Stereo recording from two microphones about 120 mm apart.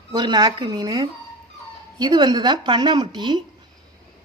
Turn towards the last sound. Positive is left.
turn(degrees=-40)  # may be behind; listen again after turning